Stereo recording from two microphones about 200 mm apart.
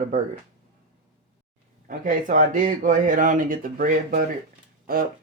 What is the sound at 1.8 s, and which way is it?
Speech, 40° right (ahead or behind).